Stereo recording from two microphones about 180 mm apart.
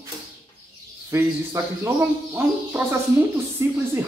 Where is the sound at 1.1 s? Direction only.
15° right (ahead or behind).